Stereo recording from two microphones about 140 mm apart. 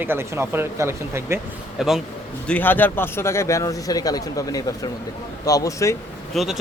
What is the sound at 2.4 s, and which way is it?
Speech, 10° left (ahead or behind).